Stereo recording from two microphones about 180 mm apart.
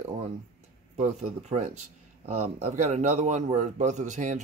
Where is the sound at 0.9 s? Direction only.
40° right (ahead or behind).